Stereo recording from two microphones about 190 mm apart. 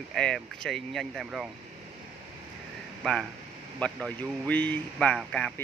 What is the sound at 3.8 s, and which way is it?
Speech, 5° left (ahead or behind).